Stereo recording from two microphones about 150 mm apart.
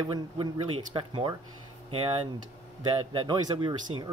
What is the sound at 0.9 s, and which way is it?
Speech, 35° right (ahead or behind).